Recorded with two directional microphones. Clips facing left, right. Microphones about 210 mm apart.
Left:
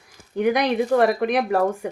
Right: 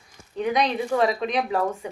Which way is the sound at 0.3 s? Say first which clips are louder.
Left 4 dB; 70° left (ahead or behind).